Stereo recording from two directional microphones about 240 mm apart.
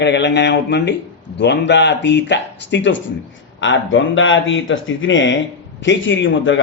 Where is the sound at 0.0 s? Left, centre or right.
Left.